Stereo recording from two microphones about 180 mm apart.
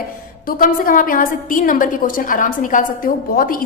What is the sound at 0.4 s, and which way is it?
A woman's voice, 50° left (ahead or behind).